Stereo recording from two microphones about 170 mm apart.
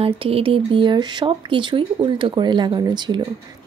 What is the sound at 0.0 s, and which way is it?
Speech, 35° right (ahead or behind).